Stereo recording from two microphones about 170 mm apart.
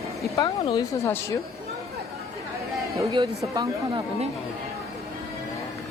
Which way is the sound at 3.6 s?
30° right (ahead or behind).